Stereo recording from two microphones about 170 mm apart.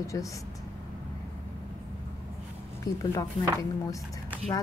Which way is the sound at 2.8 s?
20° left (ahead or behind).